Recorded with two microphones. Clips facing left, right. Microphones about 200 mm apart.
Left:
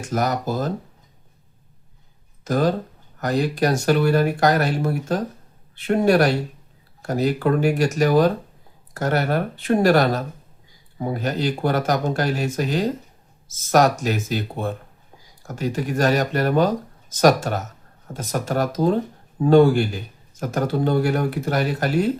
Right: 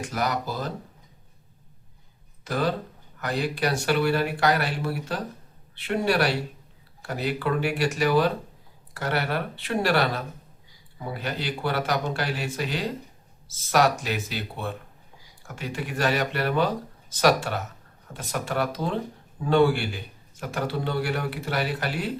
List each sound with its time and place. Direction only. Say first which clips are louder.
0.0 s a man's voice: left 5 dB; 45° left (ahead or behind)
2.4 s a man's voice: left 6 dB; 45° left (ahead or behind)